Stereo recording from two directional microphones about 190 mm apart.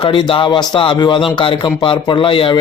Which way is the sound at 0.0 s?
25° left (ahead or behind).